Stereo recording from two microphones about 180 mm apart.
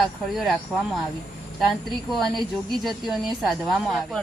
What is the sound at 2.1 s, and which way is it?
Speech, centre (ahead or behind).